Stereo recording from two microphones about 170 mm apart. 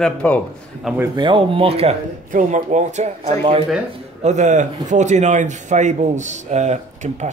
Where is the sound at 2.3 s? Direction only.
50° right (ahead or behind).